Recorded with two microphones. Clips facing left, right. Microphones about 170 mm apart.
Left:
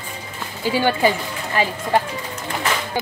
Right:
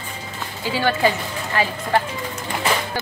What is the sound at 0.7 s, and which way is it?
Speech, 15° left (ahead or behind).